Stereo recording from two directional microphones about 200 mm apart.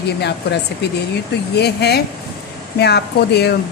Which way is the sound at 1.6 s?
55° left (ahead or behind).